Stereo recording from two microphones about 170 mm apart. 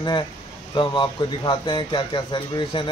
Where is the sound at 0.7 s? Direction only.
25° left (ahead or behind).